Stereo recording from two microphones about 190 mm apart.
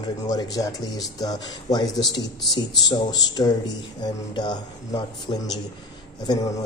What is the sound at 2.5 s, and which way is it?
A man's voice, 20° left (ahead or behind).